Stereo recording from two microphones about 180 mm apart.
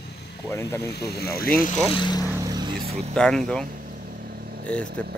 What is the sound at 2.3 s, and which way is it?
Vehicle, 15° right (ahead or behind).